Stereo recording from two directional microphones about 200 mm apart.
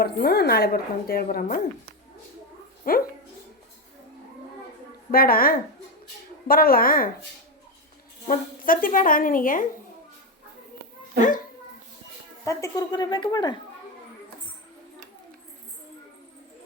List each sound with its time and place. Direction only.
0.0 s a woman's voice: 55° left (ahead or behind)
2.8 s a woman's voice: 45° left (ahead or behind)
5.1 s a woman's voice: 45° left (ahead or behind)
8.3 s a woman's voice: 45° left (ahead or behind)
12.5 s a woman's voice: 15° left (ahead or behind)